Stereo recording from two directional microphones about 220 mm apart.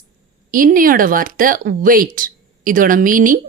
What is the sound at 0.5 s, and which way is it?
A woman's voice, 40° right (ahead or behind).